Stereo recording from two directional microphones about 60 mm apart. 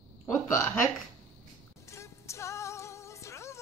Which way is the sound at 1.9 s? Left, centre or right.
Left.